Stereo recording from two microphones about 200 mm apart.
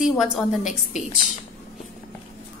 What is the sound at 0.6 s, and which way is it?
Speech, 35° left (ahead or behind).